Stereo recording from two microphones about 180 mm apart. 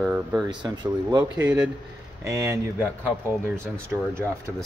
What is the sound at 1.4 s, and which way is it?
Speech, 10° right (ahead or behind).